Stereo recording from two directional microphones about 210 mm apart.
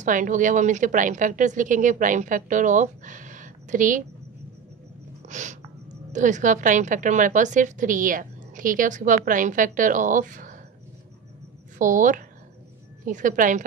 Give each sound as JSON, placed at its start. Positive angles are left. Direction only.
{"t": 0.0, "sound": "a woman's voice", "side_deg": -35}
{"t": 5.2, "sound": "a sound", "side_deg": -35}
{"t": 6.1, "sound": "a woman's voice", "side_deg": -35}
{"t": 11.8, "sound": "a woman's voice", "side_deg": -40}